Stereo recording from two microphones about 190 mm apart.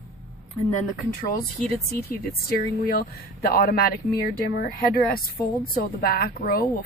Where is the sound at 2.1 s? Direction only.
50° left (ahead or behind).